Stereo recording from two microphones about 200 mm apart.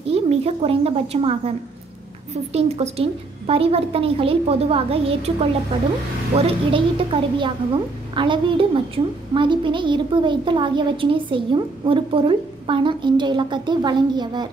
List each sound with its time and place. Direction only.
0.0 s a woman's voice: 30° right (ahead or behind)
2.5 s a woman's voice: 30° right (ahead or behind)